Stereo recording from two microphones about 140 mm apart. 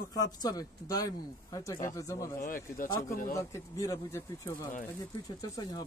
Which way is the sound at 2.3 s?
75° left (ahead or behind).